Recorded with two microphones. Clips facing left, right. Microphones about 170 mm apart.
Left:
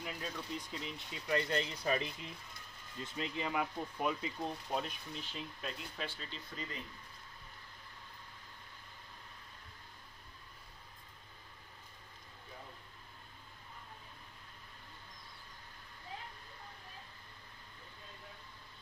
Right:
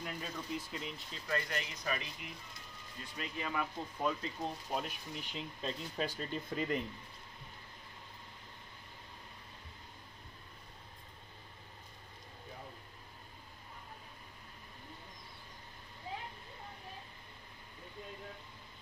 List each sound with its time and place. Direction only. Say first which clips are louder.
0.0 s speech: even; 5° right (ahead or behind)
1.2 s speech: left 3 dB; 20° left (ahead or behind)
1.5 s speech: left 5 dB; 30° left (ahead or behind); by 4.3 s 10° left (ahead or behind)
4.4 s speech: even; 5° right (ahead or behind)
5.6 s speech: right 7 dB; 35° right (ahead or behind); by 6.8 s 50° right (ahead or behind)